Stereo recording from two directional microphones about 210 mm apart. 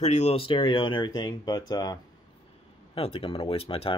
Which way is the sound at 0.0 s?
30° left (ahead or behind).